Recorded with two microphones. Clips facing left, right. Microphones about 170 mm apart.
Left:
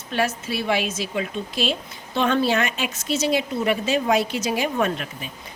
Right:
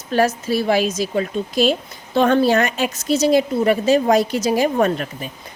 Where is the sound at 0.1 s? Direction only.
40° right (ahead or behind).